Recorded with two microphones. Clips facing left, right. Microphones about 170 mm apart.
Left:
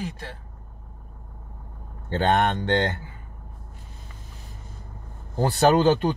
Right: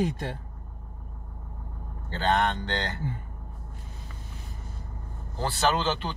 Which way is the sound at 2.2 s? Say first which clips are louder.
Left 3 dB; 55° left (ahead or behind).